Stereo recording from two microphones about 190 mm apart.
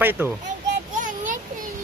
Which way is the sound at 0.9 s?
40° right (ahead or behind).